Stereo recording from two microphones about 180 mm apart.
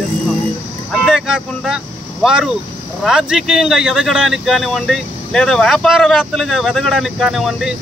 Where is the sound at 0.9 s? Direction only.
Centre (ahead or behind).